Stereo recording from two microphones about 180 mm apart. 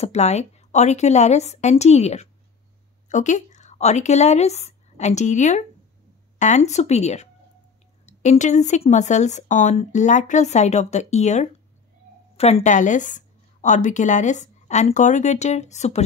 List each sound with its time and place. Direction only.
0.0 s a woman's voice: 40° left (ahead or behind)